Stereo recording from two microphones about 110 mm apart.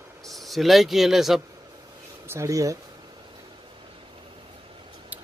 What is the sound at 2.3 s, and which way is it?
Speech, 30° right (ahead or behind).